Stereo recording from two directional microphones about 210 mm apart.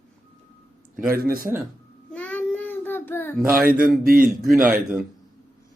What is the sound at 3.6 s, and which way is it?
Speech, 45° right (ahead or behind).